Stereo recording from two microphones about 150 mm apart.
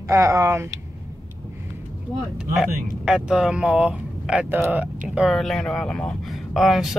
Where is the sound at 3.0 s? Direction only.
5° right (ahead or behind).